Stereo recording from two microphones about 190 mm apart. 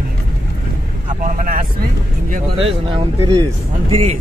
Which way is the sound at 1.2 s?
45° right (ahead or behind).